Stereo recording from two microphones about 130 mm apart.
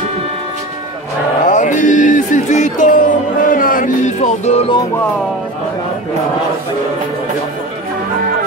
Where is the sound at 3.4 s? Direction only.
90° left; by 4.7 s 60° left (ahead or behind).